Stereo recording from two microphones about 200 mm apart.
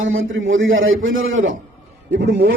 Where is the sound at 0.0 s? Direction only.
75° right (ahead or behind).